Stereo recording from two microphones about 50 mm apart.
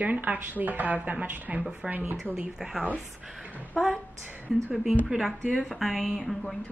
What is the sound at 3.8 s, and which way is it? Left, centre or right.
Speech, centre.